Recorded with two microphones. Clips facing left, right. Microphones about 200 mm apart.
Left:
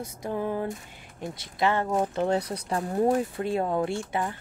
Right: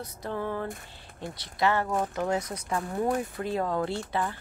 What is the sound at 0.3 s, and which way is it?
Speech, 15° left (ahead or behind).